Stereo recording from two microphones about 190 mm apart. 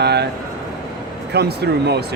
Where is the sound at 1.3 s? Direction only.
60° right (ahead or behind).